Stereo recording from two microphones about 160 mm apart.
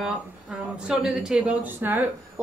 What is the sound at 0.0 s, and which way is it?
Speech, 5° right (ahead or behind).